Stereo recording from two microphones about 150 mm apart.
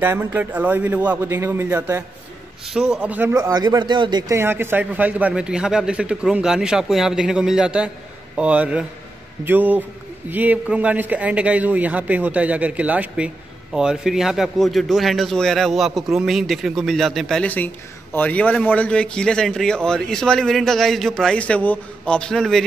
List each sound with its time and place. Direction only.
0.0 s a man's voice: 15° right (ahead or behind)
2.6 s a man's voice: 5° right (ahead or behind)
3.3 s speech: 25° right (ahead or behind)
4.4 s a man's voice: 15° right (ahead or behind); by 22.7 s centre (ahead or behind)